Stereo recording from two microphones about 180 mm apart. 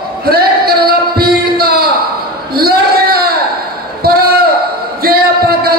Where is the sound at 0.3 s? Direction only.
60° right (ahead or behind).